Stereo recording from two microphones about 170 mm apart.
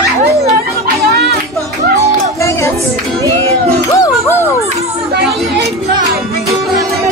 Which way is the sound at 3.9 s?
20° left (ahead or behind).